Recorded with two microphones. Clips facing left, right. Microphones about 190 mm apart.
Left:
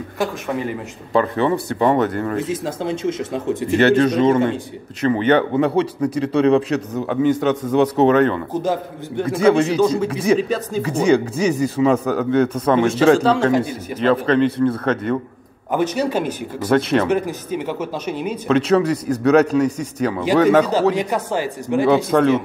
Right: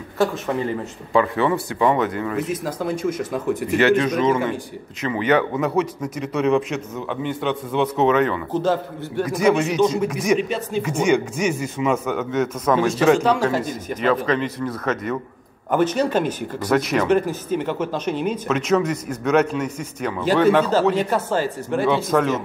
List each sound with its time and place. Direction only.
1.1 s speech: 40° left (ahead or behind)
2.3 s speech: 25° left (ahead or behind)
8.5 s a woman's voice: 15° left (ahead or behind)
9.2 s speech: 30° left (ahead or behind)
13.5 s a woman's voice: 10° left (ahead or behind)
14.2 s speech: 30° left (ahead or behind)
15.7 s a woman's voice: 10° left (ahead or behind)
16.7 s speech: 30° left (ahead or behind)
17.1 s a woman's voice: 10° left (ahead or behind)
18.5 s speech: 35° left (ahead or behind)
20.9 s a woman's voice: 15° left (ahead or behind)
21.8 s speech: 35° left (ahead or behind)